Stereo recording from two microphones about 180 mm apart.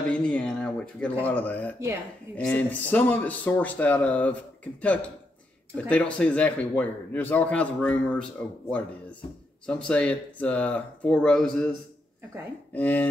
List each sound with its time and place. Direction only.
0.1 s a man's voice: 5° left (ahead or behind)
5.8 s a man's voice: 5° left (ahead or behind)
12.7 s a man's voice: 10° left (ahead or behind)